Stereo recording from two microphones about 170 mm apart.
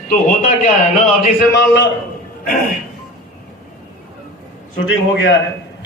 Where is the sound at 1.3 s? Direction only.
70° left (ahead or behind).